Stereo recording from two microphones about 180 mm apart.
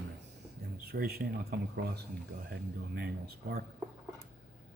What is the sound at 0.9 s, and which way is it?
A man's voice, 55° right (ahead or behind).